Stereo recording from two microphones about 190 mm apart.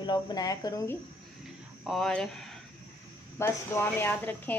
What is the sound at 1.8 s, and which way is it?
Speech, centre (ahead or behind).